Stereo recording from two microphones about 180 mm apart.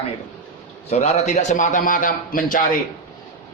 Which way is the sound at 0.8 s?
35° left (ahead or behind).